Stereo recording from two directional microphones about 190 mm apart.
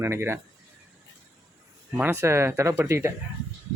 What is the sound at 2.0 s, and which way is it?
Speech, 15° right (ahead or behind).